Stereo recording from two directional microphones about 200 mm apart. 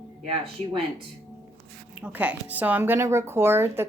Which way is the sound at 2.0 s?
10° right (ahead or behind).